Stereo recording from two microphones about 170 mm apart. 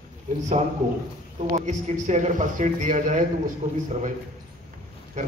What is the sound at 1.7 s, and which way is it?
A man's voice, 45° right (ahead or behind).